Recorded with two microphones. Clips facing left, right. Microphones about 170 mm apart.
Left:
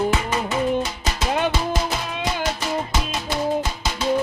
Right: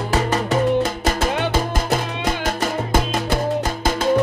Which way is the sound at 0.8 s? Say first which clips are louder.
Right 6 dB; 50° right (ahead or behind).